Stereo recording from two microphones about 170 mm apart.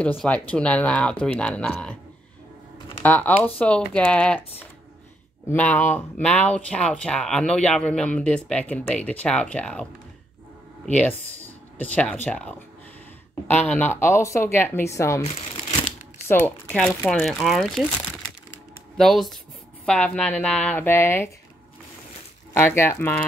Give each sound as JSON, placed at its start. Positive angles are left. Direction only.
{"t": 0.0, "sound": "speech", "side_deg": 5}
{"t": 3.0, "sound": "speech", "side_deg": 10}
{"t": 10.9, "sound": "speech", "side_deg": 10}
{"t": 15.2, "sound": "shuffling cards", "side_deg": 30}
{"t": 16.3, "sound": "speech", "side_deg": 10}
{"t": 18.9, "sound": "speech", "side_deg": 0}
{"t": 22.5, "sound": "speech", "side_deg": 15}